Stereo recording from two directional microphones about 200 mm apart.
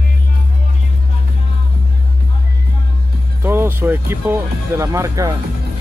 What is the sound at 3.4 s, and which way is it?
Speech, 10° right (ahead or behind).